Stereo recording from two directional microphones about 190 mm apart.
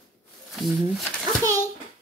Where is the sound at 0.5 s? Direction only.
Centre (ahead or behind).